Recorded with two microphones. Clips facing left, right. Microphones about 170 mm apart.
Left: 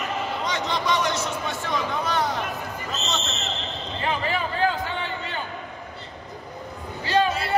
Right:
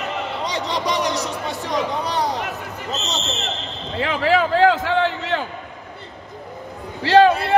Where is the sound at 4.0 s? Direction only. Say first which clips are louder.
Right 8 dB; 80° right.